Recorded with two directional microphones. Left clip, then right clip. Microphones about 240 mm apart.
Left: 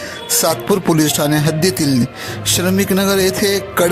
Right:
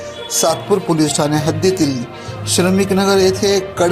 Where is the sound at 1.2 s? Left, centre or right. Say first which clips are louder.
Left 1 dB; left.